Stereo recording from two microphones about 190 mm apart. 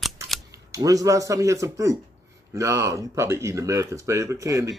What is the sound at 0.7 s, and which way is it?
Speech, 20° right (ahead or behind).